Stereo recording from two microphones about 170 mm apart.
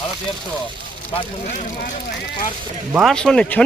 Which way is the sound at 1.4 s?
50° left (ahead or behind).